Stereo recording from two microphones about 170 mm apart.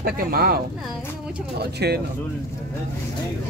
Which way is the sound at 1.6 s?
70° right (ahead or behind).